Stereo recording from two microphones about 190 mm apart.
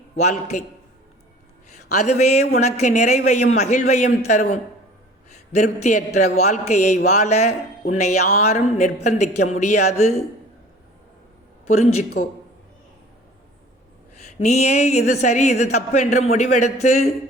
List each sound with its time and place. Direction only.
0.2 s speech: 40° left (ahead or behind)
1.9 s a man's voice: 35° left (ahead or behind)
12.2 s a woman's voice: 45° left (ahead or behind)
14.2 s speech: 35° left (ahead or behind)